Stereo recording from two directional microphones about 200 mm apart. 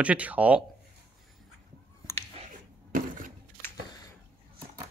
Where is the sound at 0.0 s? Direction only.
5° right (ahead or behind).